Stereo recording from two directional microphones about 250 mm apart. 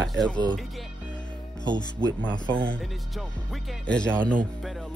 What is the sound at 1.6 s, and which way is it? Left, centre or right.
Speech, centre.